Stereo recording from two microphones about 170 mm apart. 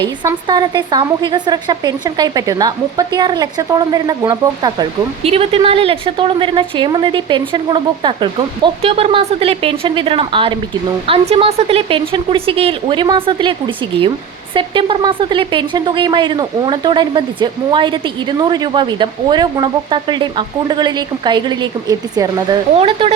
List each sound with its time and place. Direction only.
0.0 s speech: 25° right (ahead or behind)
22.8 s speech: 35° right (ahead or behind)